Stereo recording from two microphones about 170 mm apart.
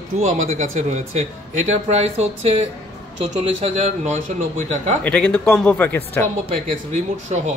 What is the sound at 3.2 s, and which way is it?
Speech, 40° right (ahead or behind).